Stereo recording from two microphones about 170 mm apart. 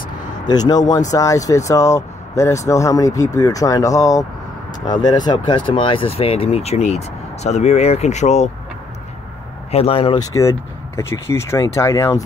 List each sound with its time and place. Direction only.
0.5 s speech: 25° left (ahead or behind); by 8.5 s 40° left (ahead or behind)
9.7 s speech: 35° left (ahead or behind)
11.0 s speech: 15° left (ahead or behind)